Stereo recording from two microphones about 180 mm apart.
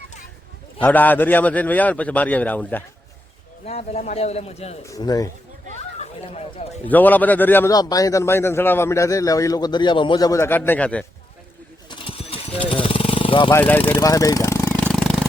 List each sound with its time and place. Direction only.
0.8 s a man's voice: 10° left (ahead or behind)
3.7 s a man's voice: 35° left (ahead or behind)
4.9 s a man's voice: 20° left (ahead or behind)
6.0 s speech: 35° left (ahead or behind)
6.8 s a man's voice: 10° left (ahead or behind)
11.9 s a sound: 30° left (ahead or behind)
13.5 s a man's voice: 10° left (ahead or behind)
13.8 s a sound: 20° left (ahead or behind); by 15.3 s centre (ahead or behind)